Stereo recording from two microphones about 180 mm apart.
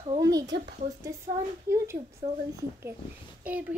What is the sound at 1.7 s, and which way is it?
Speech, 15° right (ahead or behind).